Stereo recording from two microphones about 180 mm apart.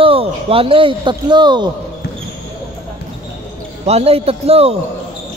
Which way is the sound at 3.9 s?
35° right (ahead or behind).